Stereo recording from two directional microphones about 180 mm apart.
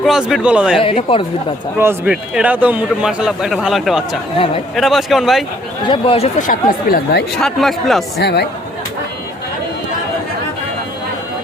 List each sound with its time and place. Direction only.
0.0 s a man's voice: centre (ahead or behind)
0.8 s speech: 30° left (ahead or behind)
1.8 s a man's voice: 10° right (ahead or behind)
5.8 s speech: 30° left (ahead or behind)
6.5 s speech: 55° left (ahead or behind)
7.3 s a man's voice: centre (ahead or behind)
8.2 s speech: 65° left (ahead or behind)